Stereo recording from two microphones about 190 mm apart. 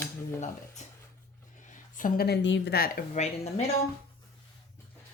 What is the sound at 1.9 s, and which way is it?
A woman's voice, 50° left (ahead or behind).